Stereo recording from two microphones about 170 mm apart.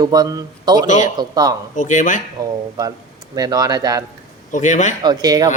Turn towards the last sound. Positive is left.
turn(degrees=-25)  # may be behind; listen again after turning